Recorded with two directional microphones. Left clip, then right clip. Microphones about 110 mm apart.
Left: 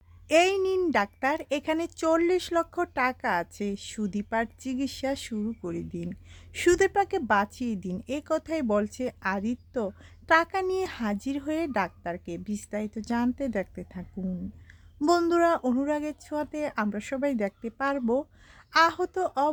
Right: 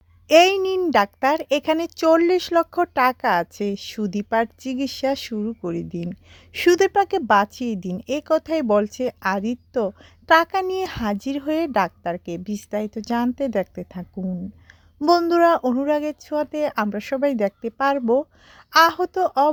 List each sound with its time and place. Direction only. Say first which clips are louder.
0.3 s a child's voice: right 8 dB; 45° right (ahead or behind)
15.3 s a woman's voice: right 7 dB; 30° right (ahead or behind)